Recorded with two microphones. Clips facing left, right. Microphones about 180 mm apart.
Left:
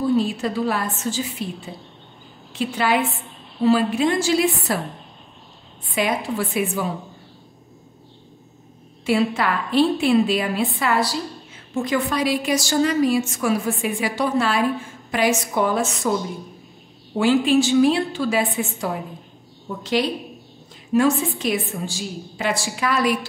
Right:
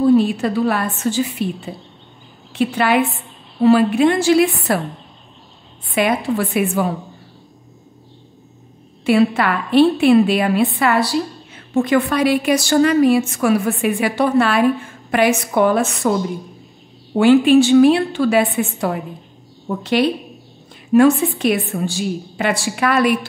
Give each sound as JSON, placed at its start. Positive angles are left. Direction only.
{"t": 0.2, "sound": "a woman's voice", "side_deg": -65}
{"t": 2.5, "sound": "a woman's voice", "side_deg": -60}
{"t": 5.9, "sound": "a woman's voice", "side_deg": -60}
{"t": 9.0, "sound": "a woman's voice", "side_deg": -60}
{"t": 17.2, "sound": "a woman's voice", "side_deg": -60}